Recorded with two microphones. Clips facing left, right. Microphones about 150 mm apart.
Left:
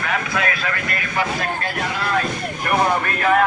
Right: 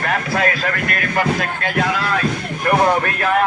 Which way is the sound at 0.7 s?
55° right (ahead or behind).